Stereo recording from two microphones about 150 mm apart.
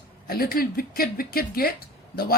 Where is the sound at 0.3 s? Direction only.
80° left.